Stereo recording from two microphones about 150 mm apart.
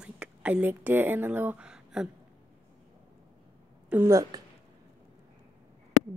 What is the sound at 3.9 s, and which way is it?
Speech, 20° right (ahead or behind).